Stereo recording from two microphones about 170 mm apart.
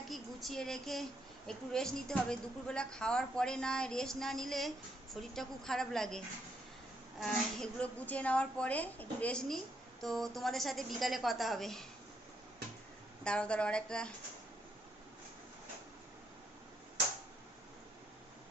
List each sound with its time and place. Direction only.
0.1 s a woman's voice: centre (ahead or behind)
13.2 s a woman's voice: 5° left (ahead or behind)